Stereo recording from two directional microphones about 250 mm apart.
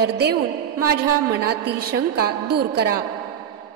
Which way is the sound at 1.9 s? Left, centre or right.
Right.